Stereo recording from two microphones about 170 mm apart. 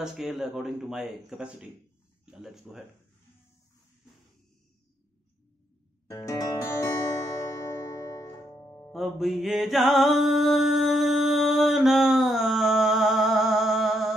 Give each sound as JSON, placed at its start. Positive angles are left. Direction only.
{"t": 0.0, "sound": "speech", "side_deg": 0}
{"t": 6.0, "sound": "music", "side_deg": 20}
{"t": 8.5, "sound": "music", "side_deg": 15}
{"t": 8.9, "sound": "music", "side_deg": 0}